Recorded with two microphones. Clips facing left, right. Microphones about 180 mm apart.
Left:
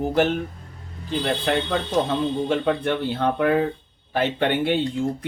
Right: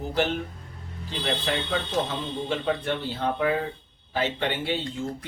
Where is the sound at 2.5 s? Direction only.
60° left (ahead or behind).